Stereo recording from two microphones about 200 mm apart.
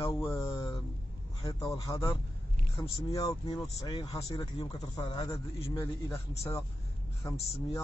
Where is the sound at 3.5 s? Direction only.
20° left (ahead or behind).